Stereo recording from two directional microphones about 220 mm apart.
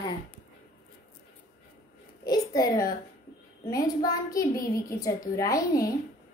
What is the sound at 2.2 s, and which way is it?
A child's voice, 15° left (ahead or behind).